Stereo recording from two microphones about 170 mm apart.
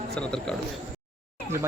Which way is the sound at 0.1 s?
5° left (ahead or behind).